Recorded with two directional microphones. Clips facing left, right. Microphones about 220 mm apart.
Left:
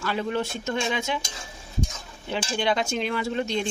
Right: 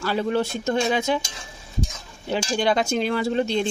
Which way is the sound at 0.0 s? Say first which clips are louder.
Right 4 dB; 35° right (ahead or behind).